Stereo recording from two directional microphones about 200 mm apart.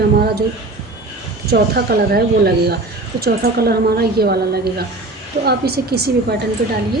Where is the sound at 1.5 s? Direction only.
50° right (ahead or behind).